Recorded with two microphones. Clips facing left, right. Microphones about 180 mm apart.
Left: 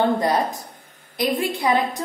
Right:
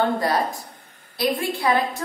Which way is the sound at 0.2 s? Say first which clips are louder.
Left 2 dB; 20° left (ahead or behind).